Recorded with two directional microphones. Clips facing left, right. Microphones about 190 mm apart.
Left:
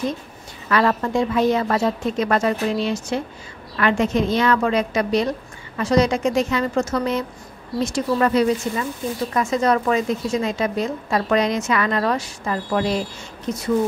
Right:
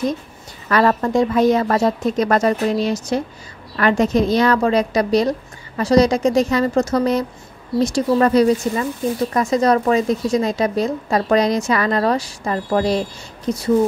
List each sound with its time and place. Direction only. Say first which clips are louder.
0.7 s speech: right 3 dB; 40° right (ahead or behind)